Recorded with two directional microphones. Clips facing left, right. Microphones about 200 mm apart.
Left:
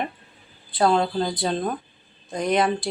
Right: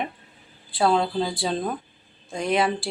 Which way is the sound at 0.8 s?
Centre (ahead or behind).